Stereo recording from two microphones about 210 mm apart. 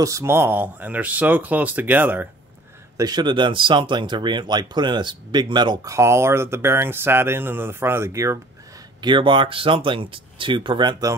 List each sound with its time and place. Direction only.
0.0 s speech: 15° right (ahead or behind)
3.0 s speech: 20° right (ahead or behind)